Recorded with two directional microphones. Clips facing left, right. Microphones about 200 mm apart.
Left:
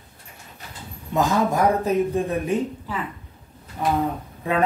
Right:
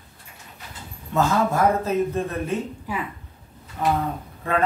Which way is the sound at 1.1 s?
15° left (ahead or behind).